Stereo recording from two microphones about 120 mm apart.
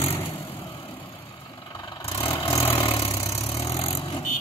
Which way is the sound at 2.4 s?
35° left (ahead or behind).